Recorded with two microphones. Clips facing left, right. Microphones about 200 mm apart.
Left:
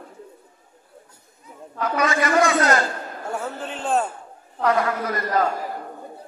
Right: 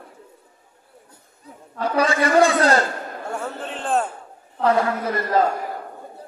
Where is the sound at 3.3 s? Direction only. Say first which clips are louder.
Left 1 dB; centre (ahead or behind).